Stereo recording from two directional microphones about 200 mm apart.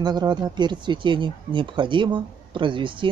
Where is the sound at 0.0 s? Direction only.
20° right (ahead or behind).